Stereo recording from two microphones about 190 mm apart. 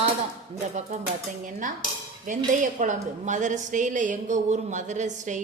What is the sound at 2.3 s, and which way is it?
Cutlery, 45° right (ahead or behind).